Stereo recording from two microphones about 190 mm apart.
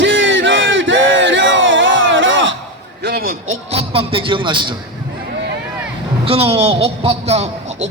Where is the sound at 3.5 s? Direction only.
35° right (ahead or behind).